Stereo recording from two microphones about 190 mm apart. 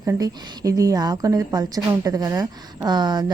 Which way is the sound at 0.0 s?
20° right (ahead or behind).